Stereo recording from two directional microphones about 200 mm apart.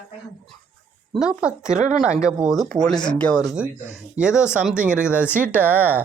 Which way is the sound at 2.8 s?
20° left (ahead or behind).